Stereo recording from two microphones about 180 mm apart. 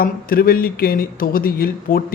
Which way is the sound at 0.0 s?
55° left (ahead or behind).